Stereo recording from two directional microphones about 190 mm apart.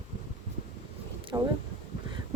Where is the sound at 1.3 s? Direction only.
15° right (ahead or behind).